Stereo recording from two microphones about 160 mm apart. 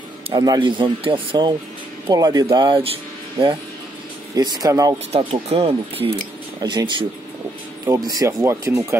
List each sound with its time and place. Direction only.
0.3 s speech: 25° right (ahead or behind)
4.4 s speech: 25° right (ahead or behind)
5.1 s speech: 40° right (ahead or behind)
6.6 s speech: 25° right (ahead or behind)